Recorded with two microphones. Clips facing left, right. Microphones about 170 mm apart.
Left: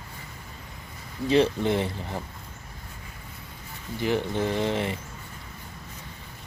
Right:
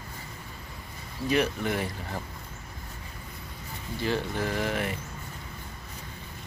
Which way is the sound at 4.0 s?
20° left (ahead or behind).